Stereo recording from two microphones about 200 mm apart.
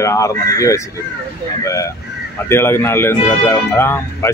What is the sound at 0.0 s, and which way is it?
Speech, 15° left (ahead or behind).